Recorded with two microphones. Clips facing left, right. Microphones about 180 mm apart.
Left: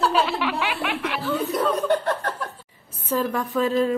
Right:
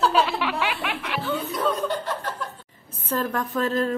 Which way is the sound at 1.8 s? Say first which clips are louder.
Left 5 dB; 55° left (ahead or behind).